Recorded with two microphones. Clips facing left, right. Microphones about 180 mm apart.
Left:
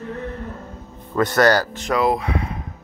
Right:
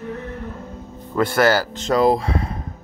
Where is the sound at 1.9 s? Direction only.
35° right (ahead or behind).